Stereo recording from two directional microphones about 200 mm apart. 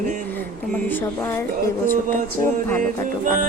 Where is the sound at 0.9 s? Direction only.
10° left (ahead or behind).